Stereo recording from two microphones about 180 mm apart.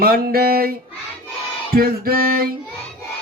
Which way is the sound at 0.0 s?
55° right (ahead or behind).